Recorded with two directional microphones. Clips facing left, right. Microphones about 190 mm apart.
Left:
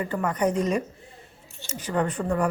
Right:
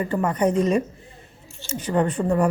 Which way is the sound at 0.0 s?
25° right (ahead or behind).